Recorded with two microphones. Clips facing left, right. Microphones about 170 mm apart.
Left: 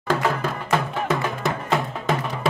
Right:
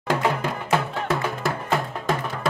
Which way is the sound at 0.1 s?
15° right (ahead or behind).